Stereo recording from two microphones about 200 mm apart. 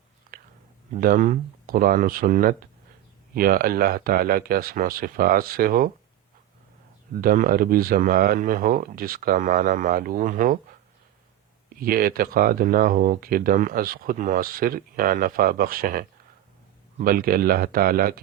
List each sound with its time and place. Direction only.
0.9 s speech: 40° right (ahead or behind)
7.1 s speech: 45° right (ahead or behind)
11.8 s speech: 45° right (ahead or behind)